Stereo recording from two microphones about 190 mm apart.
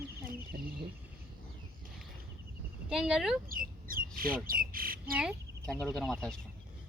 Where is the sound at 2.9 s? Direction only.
5° right (ahead or behind).